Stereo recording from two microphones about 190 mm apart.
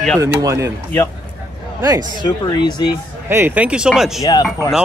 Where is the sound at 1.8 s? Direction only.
20° right (ahead or behind).